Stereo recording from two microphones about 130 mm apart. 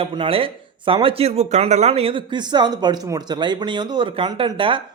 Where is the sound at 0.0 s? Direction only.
45° right (ahead or behind).